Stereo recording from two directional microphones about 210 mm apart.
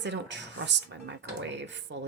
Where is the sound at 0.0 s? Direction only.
55° right (ahead or behind).